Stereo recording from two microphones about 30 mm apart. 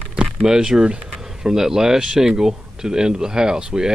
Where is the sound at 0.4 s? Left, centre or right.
Right.